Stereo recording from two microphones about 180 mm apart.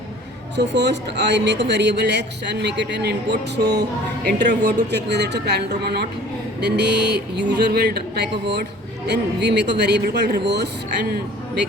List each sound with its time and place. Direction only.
0.5 s speech: 70° right (ahead or behind)